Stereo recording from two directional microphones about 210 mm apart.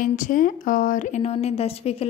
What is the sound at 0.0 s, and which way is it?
A woman's voice, 40° left (ahead or behind).